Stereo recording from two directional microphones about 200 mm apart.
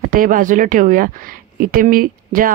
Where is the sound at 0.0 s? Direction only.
45° right (ahead or behind).